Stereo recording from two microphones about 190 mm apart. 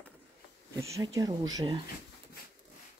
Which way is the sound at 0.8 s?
15° right (ahead or behind).